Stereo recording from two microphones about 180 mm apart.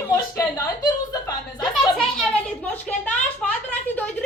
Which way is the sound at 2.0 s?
5° left (ahead or behind).